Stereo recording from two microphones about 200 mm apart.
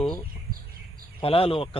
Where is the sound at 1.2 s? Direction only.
30° left (ahead or behind).